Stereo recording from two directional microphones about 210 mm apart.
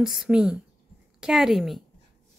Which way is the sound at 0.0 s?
Centre (ahead or behind).